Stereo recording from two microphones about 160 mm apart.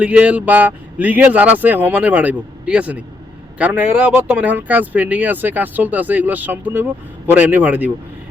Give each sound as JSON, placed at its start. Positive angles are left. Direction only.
{"t": 0.0, "sound": "speech", "side_deg": -10}